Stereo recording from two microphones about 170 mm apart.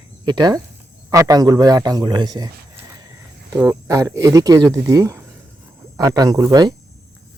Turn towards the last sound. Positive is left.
turn(degrees=-25)  # may be behind; listen again after turning